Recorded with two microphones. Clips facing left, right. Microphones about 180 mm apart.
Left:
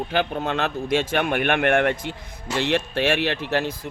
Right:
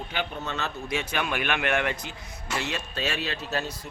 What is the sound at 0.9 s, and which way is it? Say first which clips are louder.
Speech: left 8 dB; 90° left.